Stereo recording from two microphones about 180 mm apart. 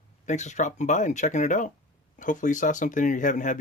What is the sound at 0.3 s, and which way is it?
Speech, 40° left (ahead or behind).